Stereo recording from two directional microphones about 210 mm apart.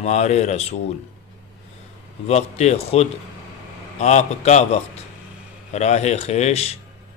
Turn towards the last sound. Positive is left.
turn(degrees=30)  # may be behind; listen again after turning